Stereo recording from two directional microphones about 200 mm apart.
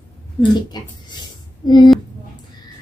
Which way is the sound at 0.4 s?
20° left (ahead or behind).